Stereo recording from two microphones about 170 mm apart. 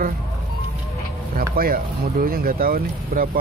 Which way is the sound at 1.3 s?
60° right (ahead or behind).